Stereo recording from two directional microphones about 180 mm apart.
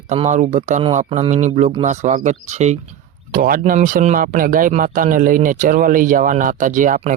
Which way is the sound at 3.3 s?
50° right (ahead or behind).